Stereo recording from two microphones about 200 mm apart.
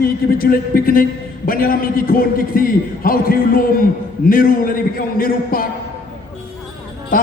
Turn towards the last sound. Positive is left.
turn(degrees=40)  # may be behind; listen again after turning